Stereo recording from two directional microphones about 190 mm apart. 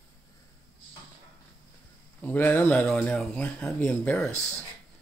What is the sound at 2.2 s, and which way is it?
Speech, 10° left (ahead or behind).